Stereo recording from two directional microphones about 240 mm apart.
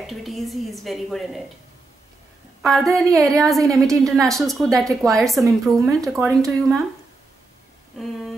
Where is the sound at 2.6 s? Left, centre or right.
Centre.